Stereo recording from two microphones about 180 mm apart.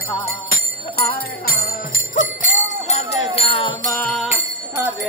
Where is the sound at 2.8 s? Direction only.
35° left (ahead or behind).